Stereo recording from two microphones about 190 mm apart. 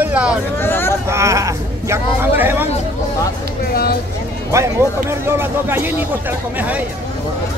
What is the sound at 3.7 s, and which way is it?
Speech, 55° left (ahead or behind).